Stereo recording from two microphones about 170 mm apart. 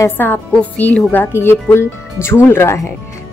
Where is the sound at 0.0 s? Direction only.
10° left (ahead or behind).